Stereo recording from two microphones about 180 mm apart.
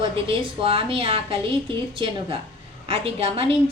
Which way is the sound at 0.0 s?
30° right (ahead or behind).